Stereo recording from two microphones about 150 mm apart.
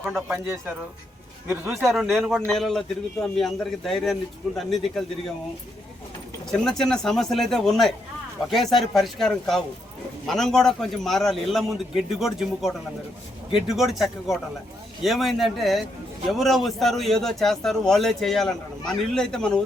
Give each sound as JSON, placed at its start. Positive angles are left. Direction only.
{"t": 0.0, "sound": "a man's voice", "side_deg": 0}
{"t": 1.5, "sound": "speech", "side_deg": -15}
{"t": 1.8, "sound": "a man's voice", "side_deg": 0}
{"t": 6.7, "sound": "a man's voice", "side_deg": 5}